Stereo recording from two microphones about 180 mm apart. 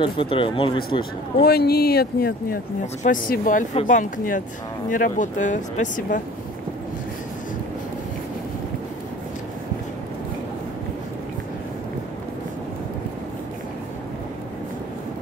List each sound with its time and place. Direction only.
0.0 s speech: 30° left (ahead or behind)
1.4 s speech: 60° left (ahead or behind)